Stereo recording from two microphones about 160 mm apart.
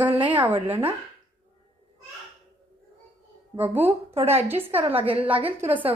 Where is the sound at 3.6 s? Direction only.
10° right (ahead or behind).